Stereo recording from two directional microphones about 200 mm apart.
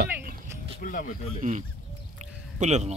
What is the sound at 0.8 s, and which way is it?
Speech, 45° left (ahead or behind).